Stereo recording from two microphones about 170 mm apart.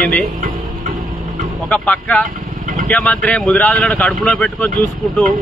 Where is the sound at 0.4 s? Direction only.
50° right (ahead or behind).